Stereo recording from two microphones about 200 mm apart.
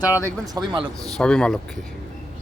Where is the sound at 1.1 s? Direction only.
5° left (ahead or behind).